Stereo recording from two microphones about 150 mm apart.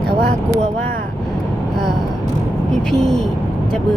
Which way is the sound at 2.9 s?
5° left (ahead or behind).